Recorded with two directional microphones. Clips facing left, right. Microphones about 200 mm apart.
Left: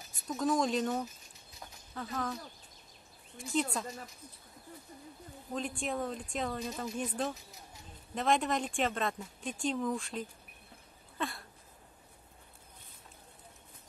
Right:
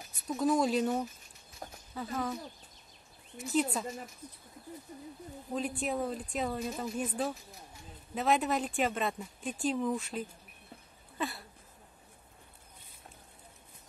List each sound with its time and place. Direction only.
0.3 s a woman's voice: 5° right (ahead or behind)
1.6 s horse: 45° right (ahead or behind)
2.0 s a woman's voice: 5° right (ahead or behind)
5.5 s a woman's voice: 5° right (ahead or behind)
11.1 s a sound: 5° right (ahead or behind)